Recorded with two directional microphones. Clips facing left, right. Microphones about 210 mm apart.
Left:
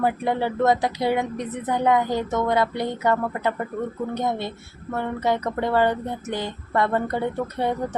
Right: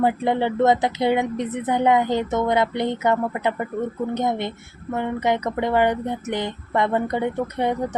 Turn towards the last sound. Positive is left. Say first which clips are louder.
# right 2 dB
turn(degrees=-15)  # may be behind; listen again after turning